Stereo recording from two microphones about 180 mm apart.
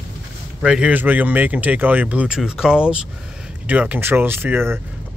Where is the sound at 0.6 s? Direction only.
5° right (ahead or behind).